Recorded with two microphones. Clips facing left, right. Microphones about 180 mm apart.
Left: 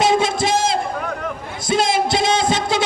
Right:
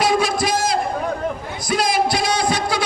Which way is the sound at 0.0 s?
25° left (ahead or behind).